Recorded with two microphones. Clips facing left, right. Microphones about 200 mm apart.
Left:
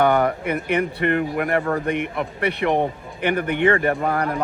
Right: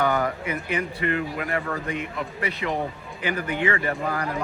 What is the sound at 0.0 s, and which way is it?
Speech, 65° left (ahead or behind).